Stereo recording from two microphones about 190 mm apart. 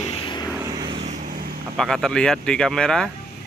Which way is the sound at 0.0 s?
30° left (ahead or behind).